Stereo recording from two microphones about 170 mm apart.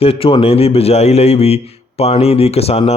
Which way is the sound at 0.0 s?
35° left (ahead or behind).